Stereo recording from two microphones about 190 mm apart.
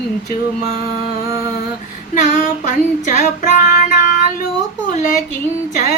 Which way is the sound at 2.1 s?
45° left (ahead or behind).